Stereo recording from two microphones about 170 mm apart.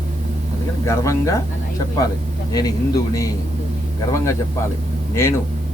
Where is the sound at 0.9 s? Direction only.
15° left (ahead or behind).